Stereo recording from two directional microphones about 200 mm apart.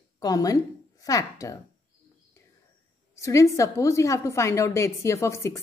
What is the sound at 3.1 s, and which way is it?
A woman's voice, 15° left (ahead or behind).